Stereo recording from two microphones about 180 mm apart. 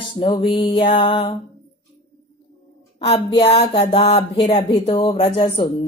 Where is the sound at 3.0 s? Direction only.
35° left (ahead or behind).